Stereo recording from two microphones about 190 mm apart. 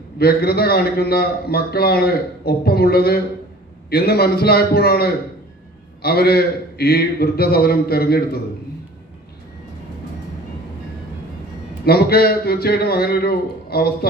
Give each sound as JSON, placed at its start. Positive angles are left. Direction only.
{"t": 0.2, "sound": "a man's voice", "side_deg": 55}
{"t": 11.9, "sound": "a man's voice", "side_deg": 55}